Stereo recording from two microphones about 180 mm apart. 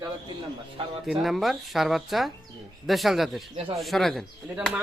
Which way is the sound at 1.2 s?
Centre (ahead or behind).